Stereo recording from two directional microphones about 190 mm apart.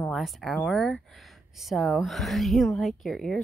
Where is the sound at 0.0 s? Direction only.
Centre (ahead or behind).